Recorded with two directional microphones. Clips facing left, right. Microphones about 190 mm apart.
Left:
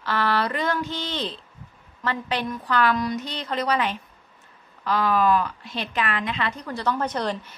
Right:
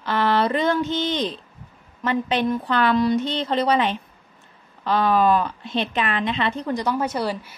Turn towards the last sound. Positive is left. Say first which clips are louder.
# right 2 dB
turn(degrees=-10)  # may be behind; listen again after turning